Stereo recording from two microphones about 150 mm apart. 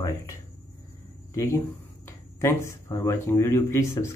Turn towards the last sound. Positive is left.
turn(degrees=15)  # may be behind; listen again after turning